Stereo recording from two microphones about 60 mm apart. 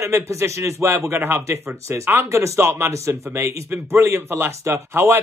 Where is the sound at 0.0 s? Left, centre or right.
Right.